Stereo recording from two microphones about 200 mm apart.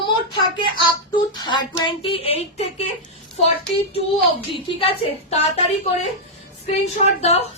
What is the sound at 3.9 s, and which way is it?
A woman's voice, 30° left (ahead or behind).